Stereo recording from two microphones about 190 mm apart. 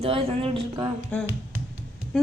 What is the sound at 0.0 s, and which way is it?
Speech, 30° right (ahead or behind).